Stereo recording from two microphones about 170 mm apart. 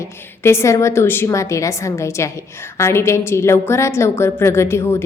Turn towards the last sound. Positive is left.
turn(degrees=15)  # may be behind; listen again after turning